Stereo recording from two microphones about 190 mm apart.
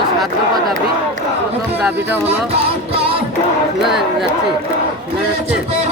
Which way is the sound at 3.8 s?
Centre (ahead or behind).